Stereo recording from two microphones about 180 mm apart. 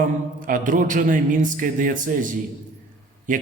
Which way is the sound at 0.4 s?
50° right (ahead or behind).